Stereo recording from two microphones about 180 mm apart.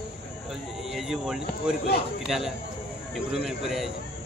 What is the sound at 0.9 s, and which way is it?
Speech, centre (ahead or behind).